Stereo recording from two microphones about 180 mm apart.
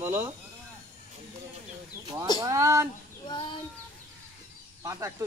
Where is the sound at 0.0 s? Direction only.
15° right (ahead or behind).